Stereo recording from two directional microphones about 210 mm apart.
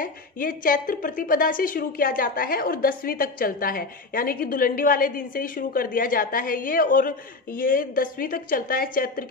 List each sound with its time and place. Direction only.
0.0 s a woman's voice: 40° left (ahead or behind)